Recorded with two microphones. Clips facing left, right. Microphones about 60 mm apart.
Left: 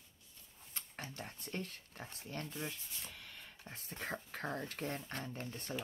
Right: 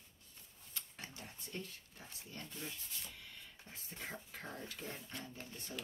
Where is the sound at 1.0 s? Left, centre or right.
Left.